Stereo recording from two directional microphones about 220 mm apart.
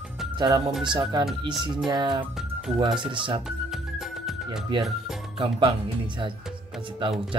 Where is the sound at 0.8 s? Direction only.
20° right (ahead or behind).